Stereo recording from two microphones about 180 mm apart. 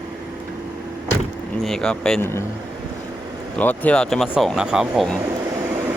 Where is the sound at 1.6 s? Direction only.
Centre (ahead or behind).